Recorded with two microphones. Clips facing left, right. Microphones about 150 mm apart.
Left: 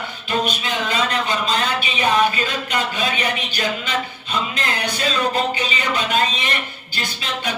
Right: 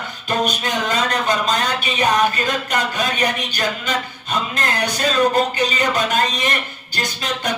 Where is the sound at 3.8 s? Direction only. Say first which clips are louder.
Right 1 dB; 45° right (ahead or behind).